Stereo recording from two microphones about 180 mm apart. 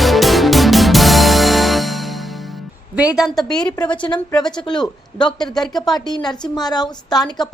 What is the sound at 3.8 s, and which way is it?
A woman's voice, 25° left (ahead or behind).